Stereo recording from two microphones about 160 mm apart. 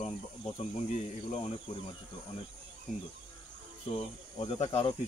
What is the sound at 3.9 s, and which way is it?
Cricket, 40° left (ahead or behind).